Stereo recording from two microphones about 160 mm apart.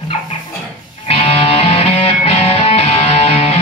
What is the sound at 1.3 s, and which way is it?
Music, 40° left (ahead or behind).